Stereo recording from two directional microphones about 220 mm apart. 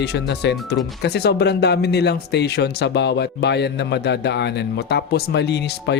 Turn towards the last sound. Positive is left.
turn(degrees=50)  # may be behind; listen again after turning